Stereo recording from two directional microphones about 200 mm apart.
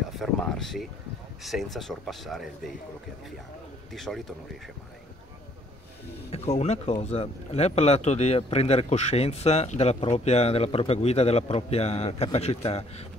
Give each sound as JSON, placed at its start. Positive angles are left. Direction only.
{"t": 0.1, "sound": "speech", "side_deg": 0}
{"t": 3.9, "sound": "speech", "side_deg": 0}
{"t": 6.3, "sound": "speech", "side_deg": 35}